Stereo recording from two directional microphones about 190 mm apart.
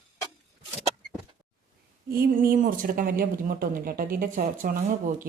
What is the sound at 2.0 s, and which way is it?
Speech, 50° right (ahead or behind).